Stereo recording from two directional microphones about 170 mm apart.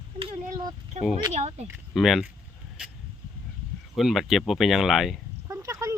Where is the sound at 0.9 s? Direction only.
45° right (ahead or behind).